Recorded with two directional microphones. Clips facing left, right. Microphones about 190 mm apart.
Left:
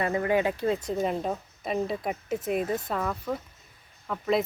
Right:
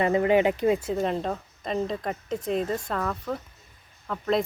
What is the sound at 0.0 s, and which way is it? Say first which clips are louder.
Speech: right 4 dB; 20° right (ahead or behind).